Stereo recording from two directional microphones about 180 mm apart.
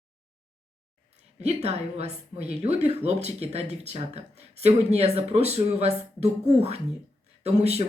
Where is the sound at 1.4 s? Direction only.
35° right (ahead or behind).